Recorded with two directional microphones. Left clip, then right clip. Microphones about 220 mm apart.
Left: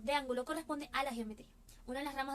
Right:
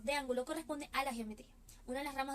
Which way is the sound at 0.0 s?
15° left (ahead or behind).